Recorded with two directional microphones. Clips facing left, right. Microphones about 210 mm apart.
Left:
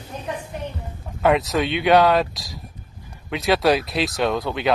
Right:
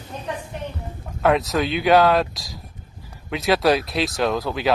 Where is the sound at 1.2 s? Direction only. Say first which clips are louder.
Even; centre (ahead or behind).